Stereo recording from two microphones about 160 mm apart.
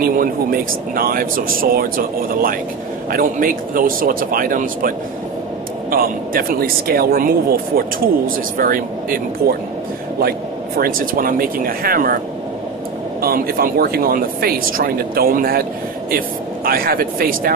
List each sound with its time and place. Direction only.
0.0 s speech: 65° right (ahead or behind)
10.8 s speech: 60° right (ahead or behind)
13.2 s speech: 70° right (ahead or behind)
16.6 s speech: 65° right (ahead or behind)